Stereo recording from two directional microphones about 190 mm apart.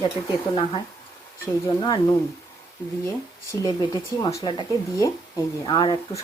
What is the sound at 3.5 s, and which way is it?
Speech, 20° left (ahead or behind).